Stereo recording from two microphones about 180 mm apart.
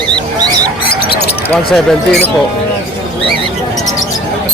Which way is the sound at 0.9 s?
65° left (ahead or behind).